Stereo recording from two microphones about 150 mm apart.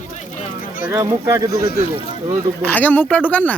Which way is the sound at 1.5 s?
90° left.